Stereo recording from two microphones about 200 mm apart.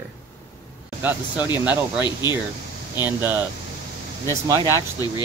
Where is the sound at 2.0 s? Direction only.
20° left (ahead or behind).